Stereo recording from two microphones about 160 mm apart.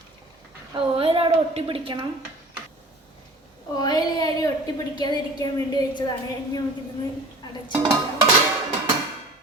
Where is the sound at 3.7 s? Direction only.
25° left (ahead or behind).